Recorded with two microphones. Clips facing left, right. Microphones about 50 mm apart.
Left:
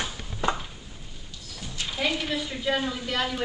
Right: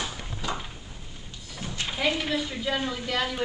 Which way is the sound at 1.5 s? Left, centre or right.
Right.